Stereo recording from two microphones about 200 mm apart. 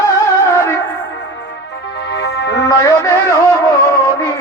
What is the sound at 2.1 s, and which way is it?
Music, 60° left (ahead or behind).